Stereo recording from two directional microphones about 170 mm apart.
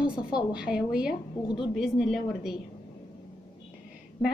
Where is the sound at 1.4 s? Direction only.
30° left (ahead or behind).